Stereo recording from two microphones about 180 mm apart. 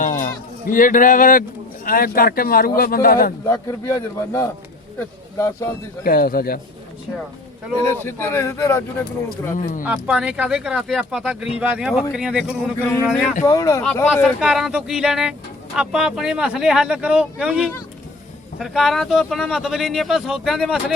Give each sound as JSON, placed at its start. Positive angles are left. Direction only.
{"t": 0.0, "sound": "a sound", "side_deg": 45}
{"t": 0.7, "sound": "speech", "side_deg": 50}
{"t": 3.4, "sound": "a man's voice", "side_deg": 15}
{"t": 6.1, "sound": "speech", "side_deg": 55}
{"t": 8.0, "sound": "a man's voice", "side_deg": 15}
{"t": 9.6, "sound": "speech", "side_deg": 50}
{"t": 9.8, "sound": "speech", "side_deg": -5}
{"t": 13.4, "sound": "a man's voice", "side_deg": 20}
{"t": 14.4, "sound": "speech", "side_deg": -5}